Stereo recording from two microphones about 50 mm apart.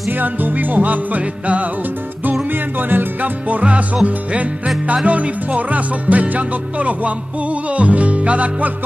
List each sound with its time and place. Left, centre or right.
0.1 s music: right
2.5 s music: right